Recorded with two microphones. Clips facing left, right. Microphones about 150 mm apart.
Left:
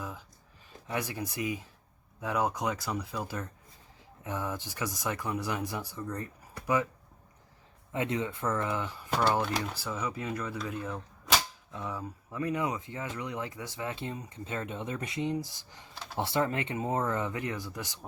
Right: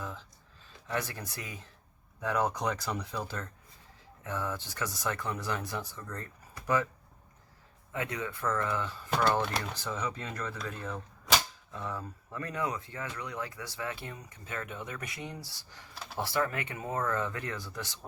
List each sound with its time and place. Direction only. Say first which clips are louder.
0.0 s a sound: even; 10° left (ahead or behind)
0.9 s speech: left 1 dB; 10° left (ahead or behind)
2.2 s speech: even; 5° left (ahead or behind)
7.9 s speech: left 4 dB; 20° left (ahead or behind)
9.0 s speech: left 1 dB; 5° left (ahead or behind)